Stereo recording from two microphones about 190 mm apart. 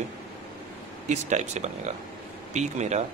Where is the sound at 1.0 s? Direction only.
40° right (ahead or behind).